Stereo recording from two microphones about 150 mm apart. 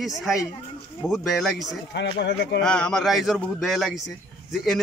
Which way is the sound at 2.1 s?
90° left.